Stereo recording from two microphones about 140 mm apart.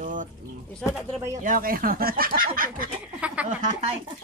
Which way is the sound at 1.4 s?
80° right.